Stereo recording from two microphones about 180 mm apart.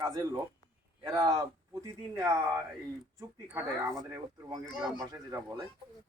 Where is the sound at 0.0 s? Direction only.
20° right (ahead or behind).